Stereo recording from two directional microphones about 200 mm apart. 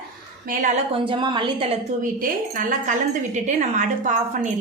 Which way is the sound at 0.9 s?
25° right (ahead or behind).